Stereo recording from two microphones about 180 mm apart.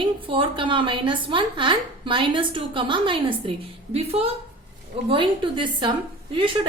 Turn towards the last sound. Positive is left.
turn(degrees=-25)  # may be behind; listen again after turning